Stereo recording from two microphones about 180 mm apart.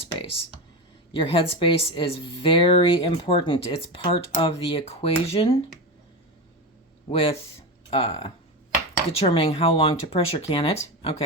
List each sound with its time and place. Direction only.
0.1 s computer keyboard: 30° left (ahead or behind)
1.1 s a woman's voice: 30° left (ahead or behind)
7.1 s speech: 30° left (ahead or behind)